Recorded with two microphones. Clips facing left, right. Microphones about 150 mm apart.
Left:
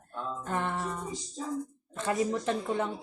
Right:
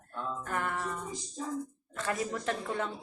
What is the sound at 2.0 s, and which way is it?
Speech, 20° left (ahead or behind).